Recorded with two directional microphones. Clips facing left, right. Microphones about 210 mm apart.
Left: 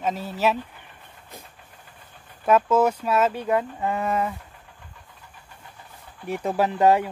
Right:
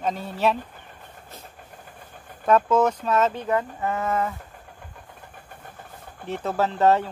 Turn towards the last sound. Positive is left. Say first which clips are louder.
# left 1 dB
turn(degrees=10)  # may be behind; listen again after turning